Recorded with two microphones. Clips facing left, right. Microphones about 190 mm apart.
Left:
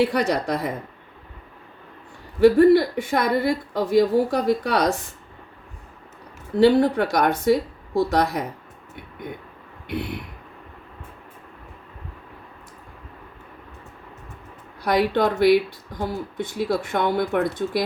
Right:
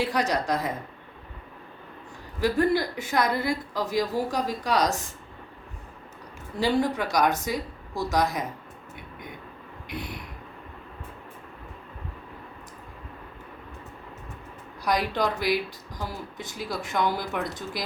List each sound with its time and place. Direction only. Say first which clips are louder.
0.0 s a woman's voice: left 5 dB; 60° left (ahead or behind)
2.4 s a woman's voice: left 10 dB; 60° left (ahead or behind)
6.6 s a woman's voice: left 8 dB; 60° left (ahead or behind)
9.8 s a sound: left 7 dB; 60° left (ahead or behind)
14.8 s a woman's voice: left 6 dB; 60° left (ahead or behind)